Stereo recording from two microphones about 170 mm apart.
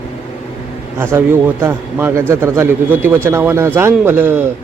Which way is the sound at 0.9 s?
15° right (ahead or behind).